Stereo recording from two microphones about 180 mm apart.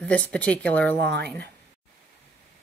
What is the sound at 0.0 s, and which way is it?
A woman's voice, 10° left (ahead or behind).